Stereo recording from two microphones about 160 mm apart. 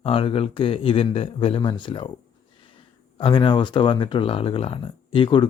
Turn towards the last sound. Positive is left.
turn(degrees=30)  # may be behind; listen again after turning